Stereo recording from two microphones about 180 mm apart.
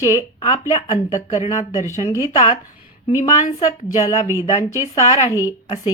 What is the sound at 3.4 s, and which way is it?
Speech, 40° left (ahead or behind).